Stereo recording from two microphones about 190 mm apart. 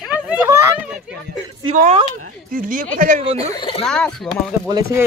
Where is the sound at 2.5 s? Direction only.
45° right (ahead or behind).